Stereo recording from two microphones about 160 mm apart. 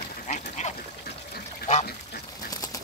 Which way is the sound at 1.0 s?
75° left (ahead or behind).